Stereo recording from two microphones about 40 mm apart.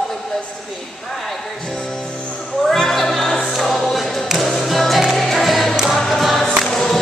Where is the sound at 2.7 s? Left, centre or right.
Centre.